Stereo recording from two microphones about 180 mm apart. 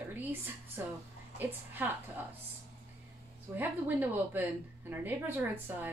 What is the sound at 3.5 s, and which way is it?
A woman's voice, 10° right (ahead or behind).